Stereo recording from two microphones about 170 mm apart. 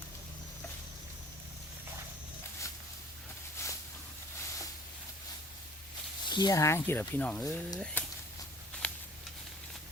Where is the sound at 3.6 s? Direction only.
15° left (ahead or behind).